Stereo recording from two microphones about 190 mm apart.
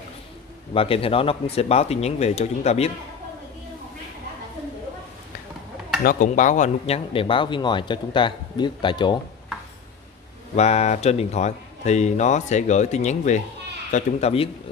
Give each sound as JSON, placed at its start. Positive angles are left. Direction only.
{"t": 0.7, "sound": "speech", "side_deg": 30}
{"t": 6.0, "sound": "speech", "side_deg": 45}
{"t": 7.1, "sound": "speech", "side_deg": 25}
{"t": 10.5, "sound": "speech", "side_deg": 35}